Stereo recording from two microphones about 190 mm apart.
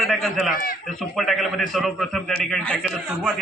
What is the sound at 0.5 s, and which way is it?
Speech, 50° left (ahead or behind).